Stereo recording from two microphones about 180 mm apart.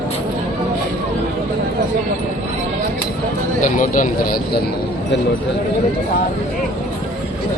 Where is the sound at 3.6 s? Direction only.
45° left (ahead or behind).